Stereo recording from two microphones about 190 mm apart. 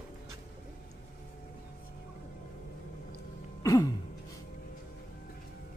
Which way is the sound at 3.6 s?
20° left (ahead or behind).